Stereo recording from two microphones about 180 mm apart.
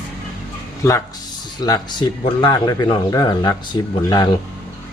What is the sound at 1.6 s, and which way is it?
Speech, 25° left (ahead or behind).